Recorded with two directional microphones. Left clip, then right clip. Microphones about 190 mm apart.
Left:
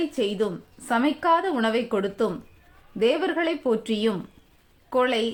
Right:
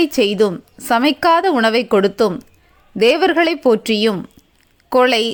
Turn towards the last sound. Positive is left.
turn(degrees=-40)  # may be behind; listen again after turning